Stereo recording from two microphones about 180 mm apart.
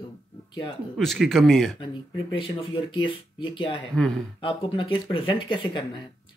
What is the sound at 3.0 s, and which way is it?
Speech, 25° left (ahead or behind).